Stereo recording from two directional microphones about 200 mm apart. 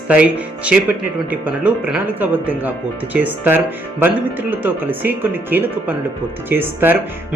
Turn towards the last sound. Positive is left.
turn(degrees=-10)  # may be behind; listen again after turning